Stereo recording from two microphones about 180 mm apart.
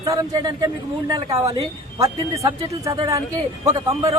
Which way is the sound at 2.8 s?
20° right (ahead or behind).